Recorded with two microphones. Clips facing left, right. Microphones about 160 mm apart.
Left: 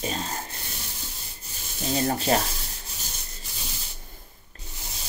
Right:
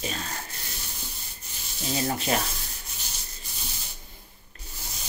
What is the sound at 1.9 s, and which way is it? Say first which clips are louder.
Sanding: left 3 dB; 35° left (ahead or behind).